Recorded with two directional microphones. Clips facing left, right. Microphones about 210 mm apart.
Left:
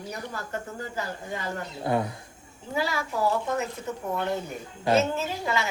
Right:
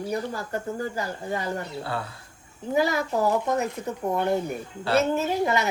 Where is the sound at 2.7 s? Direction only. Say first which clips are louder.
Right 5 dB; 20° right (ahead or behind).